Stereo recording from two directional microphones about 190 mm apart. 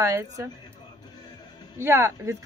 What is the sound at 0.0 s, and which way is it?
Speech, 15° right (ahead or behind).